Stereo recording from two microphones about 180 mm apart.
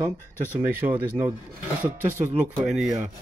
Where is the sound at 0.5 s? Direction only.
10° right (ahead or behind).